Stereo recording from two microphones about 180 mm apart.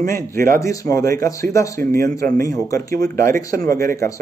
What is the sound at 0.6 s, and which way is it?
Speech, 15° left (ahead or behind).